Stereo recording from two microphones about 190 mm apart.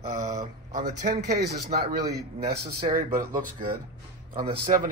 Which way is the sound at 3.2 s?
45° right (ahead or behind).